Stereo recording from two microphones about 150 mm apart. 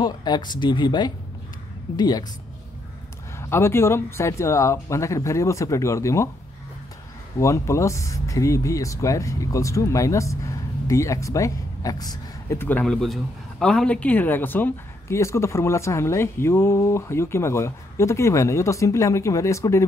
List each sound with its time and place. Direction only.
0.0 s speech: 30° left (ahead or behind)
3.3 s speech: 15° left (ahead or behind)
7.3 s speech: 20° left (ahead or behind)